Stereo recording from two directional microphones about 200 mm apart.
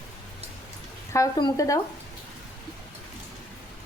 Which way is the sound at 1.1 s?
20° left (ahead or behind).